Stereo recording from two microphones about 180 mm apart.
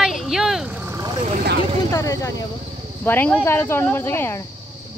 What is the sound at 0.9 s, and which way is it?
Vehicle, 20° right (ahead or behind).